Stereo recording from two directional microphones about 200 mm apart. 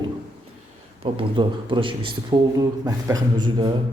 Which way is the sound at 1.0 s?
25° right (ahead or behind).